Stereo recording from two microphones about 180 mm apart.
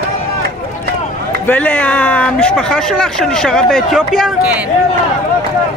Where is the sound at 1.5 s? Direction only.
10° left (ahead or behind).